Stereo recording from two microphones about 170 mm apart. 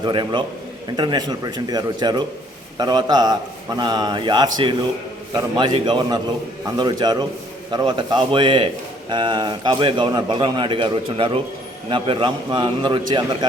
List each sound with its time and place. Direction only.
0.0 s a man's voice: 25° right (ahead or behind)